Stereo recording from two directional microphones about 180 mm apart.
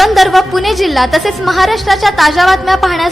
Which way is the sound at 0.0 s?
Centre (ahead or behind).